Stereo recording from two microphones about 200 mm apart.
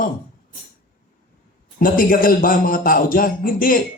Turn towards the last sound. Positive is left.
turn(degrees=45)  # may be behind; listen again after turning